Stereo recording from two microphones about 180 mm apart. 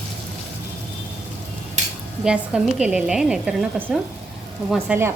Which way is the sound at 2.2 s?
5° right (ahead or behind).